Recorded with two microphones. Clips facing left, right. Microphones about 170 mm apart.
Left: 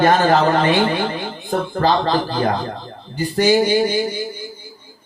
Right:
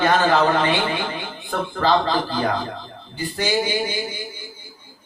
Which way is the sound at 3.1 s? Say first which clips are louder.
Left 8 dB; 40° left (ahead or behind).